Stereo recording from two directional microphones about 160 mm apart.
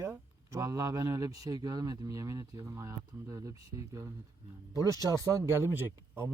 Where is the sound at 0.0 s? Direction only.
20° right (ahead or behind).